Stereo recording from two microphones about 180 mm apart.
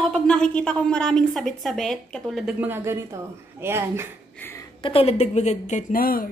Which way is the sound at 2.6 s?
15° right (ahead or behind).